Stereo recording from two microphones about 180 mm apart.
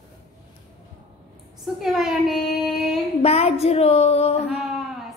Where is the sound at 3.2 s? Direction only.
35° left (ahead or behind).